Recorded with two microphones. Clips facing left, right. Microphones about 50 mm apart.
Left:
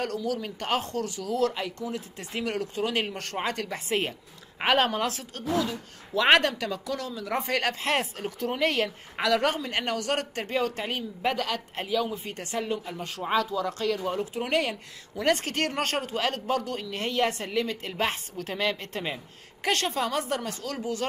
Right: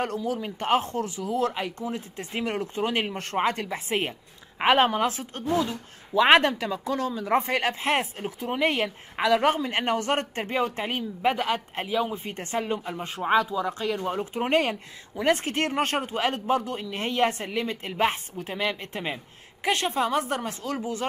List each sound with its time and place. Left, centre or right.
0.0 s a woman's voice: right
14.2 s a woman's voice: right